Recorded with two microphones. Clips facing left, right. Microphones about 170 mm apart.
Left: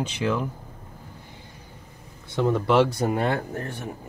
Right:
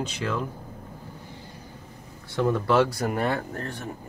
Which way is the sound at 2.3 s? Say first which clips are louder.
Left 1 dB; 20° left (ahead or behind).